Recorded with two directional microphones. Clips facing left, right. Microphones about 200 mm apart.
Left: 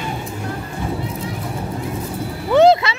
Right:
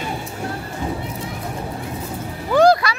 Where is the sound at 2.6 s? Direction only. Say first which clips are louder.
Left 2 dB; 25° left (ahead or behind).